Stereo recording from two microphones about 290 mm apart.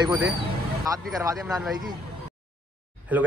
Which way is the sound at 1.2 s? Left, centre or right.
Centre.